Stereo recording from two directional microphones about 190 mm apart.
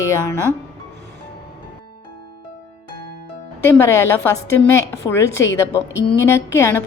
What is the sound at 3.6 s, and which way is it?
A woman's voice, 15° left (ahead or behind).